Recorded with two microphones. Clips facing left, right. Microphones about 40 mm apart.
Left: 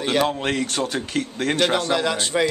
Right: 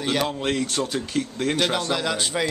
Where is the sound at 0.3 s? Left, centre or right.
Centre.